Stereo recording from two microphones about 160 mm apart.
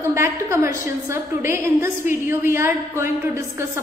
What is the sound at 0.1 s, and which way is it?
A woman's voice, 15° right (ahead or behind).